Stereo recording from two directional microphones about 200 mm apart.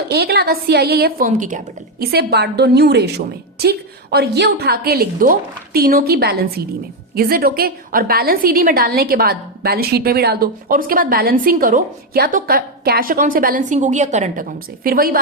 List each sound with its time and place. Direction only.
0.1 s a woman's voice: 55° right (ahead or behind); by 14.4 s 35° right (ahead or behind)
14.8 s a woman's voice: 45° right (ahead or behind)